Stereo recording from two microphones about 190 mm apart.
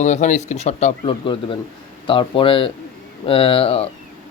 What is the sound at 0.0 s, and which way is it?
Speech, 40° left (ahead or behind).